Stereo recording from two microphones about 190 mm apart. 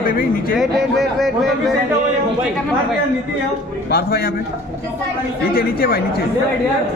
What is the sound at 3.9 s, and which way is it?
Speech, 55° left (ahead or behind).